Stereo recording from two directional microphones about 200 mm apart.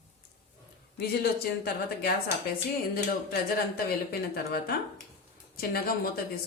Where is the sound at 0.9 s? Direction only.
50° left (ahead or behind).